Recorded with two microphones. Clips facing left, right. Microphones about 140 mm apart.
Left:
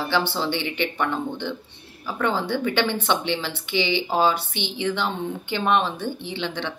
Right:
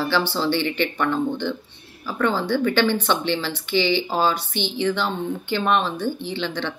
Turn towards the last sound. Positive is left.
turn(degrees=20)  # may be behind; listen again after turning